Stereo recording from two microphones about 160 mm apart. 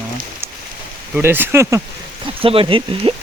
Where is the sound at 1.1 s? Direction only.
10° right (ahead or behind).